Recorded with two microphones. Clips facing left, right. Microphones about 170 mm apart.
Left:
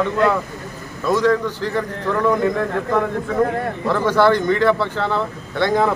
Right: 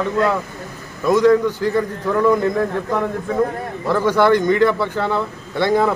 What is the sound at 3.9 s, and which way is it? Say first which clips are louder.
A man's voice: right 1 dB; 15° right (ahead or behind).